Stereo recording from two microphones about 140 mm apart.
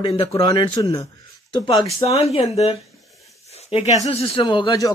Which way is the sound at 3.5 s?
50° left (ahead or behind).